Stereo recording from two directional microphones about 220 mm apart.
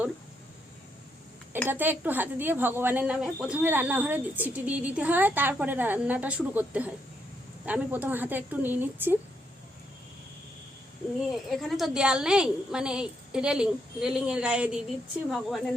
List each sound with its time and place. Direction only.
1.6 s speech: 10° right (ahead or behind)
11.5 s a woman's voice: centre (ahead or behind)